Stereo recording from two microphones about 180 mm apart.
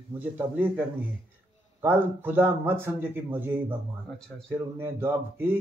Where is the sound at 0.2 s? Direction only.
10° right (ahead or behind).